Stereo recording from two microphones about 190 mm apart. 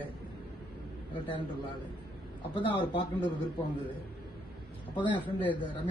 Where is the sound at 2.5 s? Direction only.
25° left (ahead or behind).